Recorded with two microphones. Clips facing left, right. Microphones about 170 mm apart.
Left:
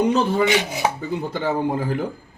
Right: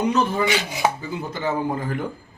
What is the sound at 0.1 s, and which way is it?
Chopping, 30° left (ahead or behind).